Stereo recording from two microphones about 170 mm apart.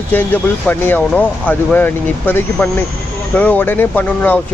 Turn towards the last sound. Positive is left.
turn(degrees=10)  # may be behind; listen again after turning